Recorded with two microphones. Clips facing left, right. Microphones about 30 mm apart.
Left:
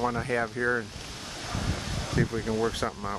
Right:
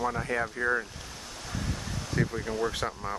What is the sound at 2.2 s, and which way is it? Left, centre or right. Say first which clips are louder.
Speech: left 2 dB; left.